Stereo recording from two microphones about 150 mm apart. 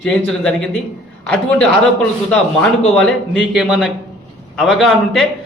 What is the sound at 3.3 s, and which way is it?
A man's voice, 5° right (ahead or behind).